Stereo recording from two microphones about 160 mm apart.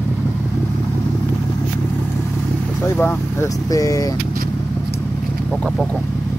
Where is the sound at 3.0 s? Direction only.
20° left (ahead or behind).